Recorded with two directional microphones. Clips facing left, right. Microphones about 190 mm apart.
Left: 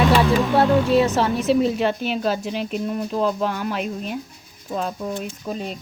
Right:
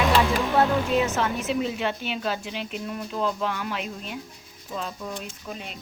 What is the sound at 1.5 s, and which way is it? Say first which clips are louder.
Speech: left 8 dB; 40° left (ahead or behind).